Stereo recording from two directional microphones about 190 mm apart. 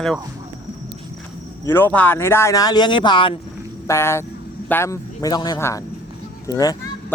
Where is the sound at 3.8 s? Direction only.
15° left (ahead or behind).